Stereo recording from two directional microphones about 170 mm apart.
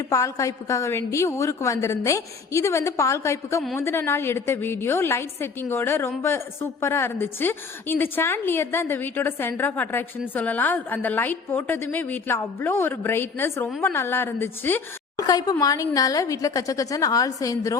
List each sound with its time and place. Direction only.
0.1 s a woman's voice: 20° left (ahead or behind)